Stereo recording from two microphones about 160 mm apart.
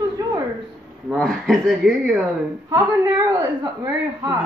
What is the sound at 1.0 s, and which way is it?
Speech, centre (ahead or behind).